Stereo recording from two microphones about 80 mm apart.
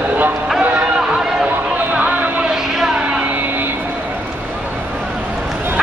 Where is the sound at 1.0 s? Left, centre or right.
Centre.